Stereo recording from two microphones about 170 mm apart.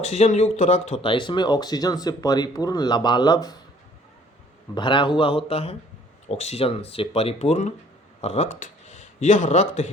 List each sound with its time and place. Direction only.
0.0 s speech: 40° left (ahead or behind); by 3.6 s 25° left (ahead or behind)
4.7 s speech: 30° left (ahead or behind)